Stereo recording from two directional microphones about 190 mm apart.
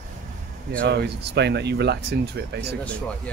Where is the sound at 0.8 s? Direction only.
60° right (ahead or behind).